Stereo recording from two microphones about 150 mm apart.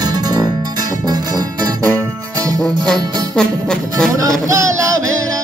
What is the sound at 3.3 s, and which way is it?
Music, 5° left (ahead or behind).